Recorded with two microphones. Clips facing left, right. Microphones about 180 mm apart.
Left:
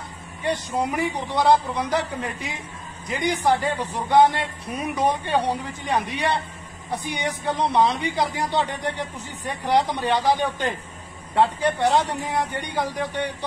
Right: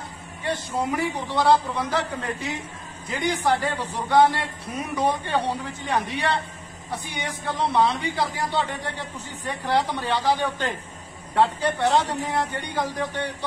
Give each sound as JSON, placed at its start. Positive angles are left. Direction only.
{"t": 0.4, "sound": "a man's voice", "side_deg": 15}
{"t": 9.7, "sound": "a man's voice", "side_deg": 15}